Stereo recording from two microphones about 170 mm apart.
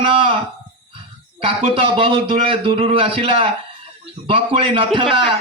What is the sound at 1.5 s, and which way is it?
A man's voice, 35° right (ahead or behind).